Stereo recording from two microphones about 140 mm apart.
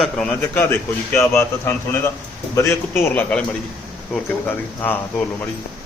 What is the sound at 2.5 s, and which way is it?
Speech, 15° left (ahead or behind).